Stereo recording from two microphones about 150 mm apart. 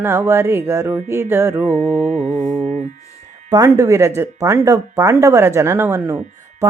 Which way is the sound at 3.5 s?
20° right (ahead or behind).